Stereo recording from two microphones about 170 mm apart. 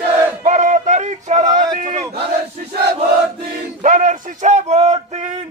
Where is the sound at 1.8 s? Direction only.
45° right (ahead or behind).